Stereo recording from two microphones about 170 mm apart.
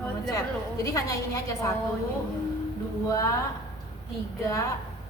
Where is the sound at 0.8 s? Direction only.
20° left (ahead or behind).